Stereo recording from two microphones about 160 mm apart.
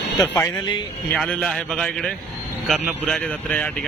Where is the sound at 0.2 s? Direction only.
20° left (ahead or behind).